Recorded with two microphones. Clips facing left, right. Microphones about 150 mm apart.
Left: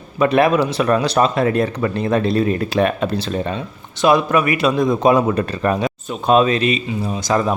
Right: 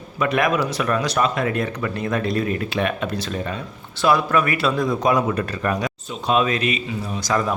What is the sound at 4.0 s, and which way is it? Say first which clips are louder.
Speech: left 4 dB; 20° left (ahead or behind).